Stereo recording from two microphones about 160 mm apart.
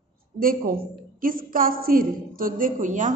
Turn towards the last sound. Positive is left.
turn(degrees=-55)  # may be behind; listen again after turning